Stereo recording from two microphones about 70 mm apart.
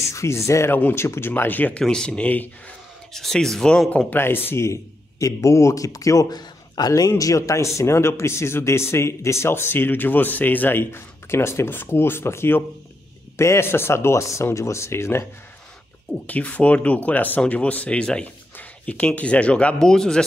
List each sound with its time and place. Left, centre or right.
0.0 s a man's voice: left
1.8 s speech: centre
3.1 s speech: centre
4.1 s a man's voice: left
7.1 s speech: left
16.3 s speech: centre